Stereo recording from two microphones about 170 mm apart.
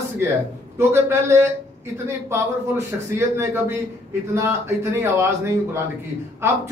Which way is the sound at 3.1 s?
15° right (ahead or behind).